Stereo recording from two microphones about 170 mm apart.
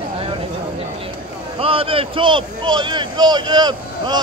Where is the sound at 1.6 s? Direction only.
35° right (ahead or behind).